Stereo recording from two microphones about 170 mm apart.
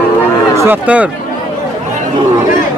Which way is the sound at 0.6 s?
10° right (ahead or behind).